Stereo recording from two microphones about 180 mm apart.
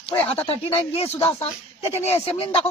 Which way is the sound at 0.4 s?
35° left (ahead or behind).